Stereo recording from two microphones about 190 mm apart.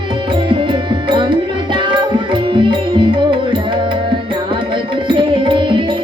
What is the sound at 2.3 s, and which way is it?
Music, 25° right (ahead or behind).